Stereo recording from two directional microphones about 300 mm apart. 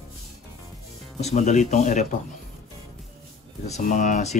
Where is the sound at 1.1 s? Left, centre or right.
Left.